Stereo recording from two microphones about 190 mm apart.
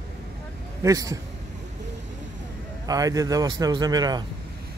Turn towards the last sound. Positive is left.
turn(degrees=-20)  # may be behind; listen again after turning